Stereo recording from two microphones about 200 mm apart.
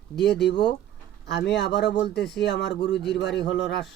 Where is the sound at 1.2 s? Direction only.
60° left (ahead or behind).